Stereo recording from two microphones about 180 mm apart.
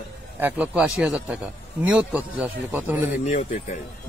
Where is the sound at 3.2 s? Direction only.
40° left (ahead or behind).